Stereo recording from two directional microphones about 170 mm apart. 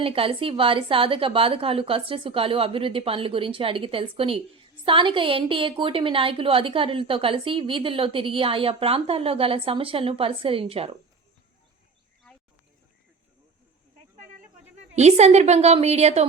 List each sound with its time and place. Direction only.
0.0 s a woman's voice: 35° right (ahead or behind)
12.3 s a sound: 5° left (ahead or behind)
14.8 s a woman's voice: 40° right (ahead or behind)